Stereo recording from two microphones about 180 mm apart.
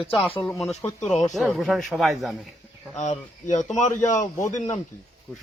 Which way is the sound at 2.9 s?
40° left (ahead or behind).